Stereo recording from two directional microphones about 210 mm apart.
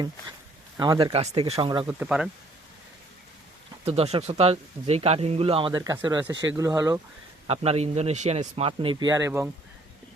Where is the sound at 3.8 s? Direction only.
30° right (ahead or behind).